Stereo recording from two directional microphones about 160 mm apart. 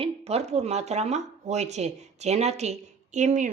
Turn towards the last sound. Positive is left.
turn(degrees=-50)  # may be behind; listen again after turning